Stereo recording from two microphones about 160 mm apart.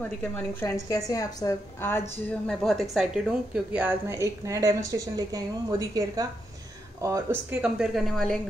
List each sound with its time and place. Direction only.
0.0 s a woman's voice: 10° left (ahead or behind)
2.6 s a woman's voice: centre (ahead or behind); by 7.3 s 20° right (ahead or behind)
7.6 s a woman's voice: 5° right (ahead or behind)